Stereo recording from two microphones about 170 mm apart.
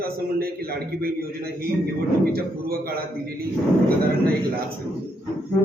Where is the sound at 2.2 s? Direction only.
60° right (ahead or behind).